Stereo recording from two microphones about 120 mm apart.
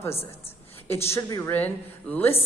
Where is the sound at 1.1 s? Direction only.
20° left (ahead or behind).